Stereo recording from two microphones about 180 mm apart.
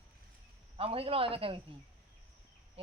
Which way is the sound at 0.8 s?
30° right (ahead or behind).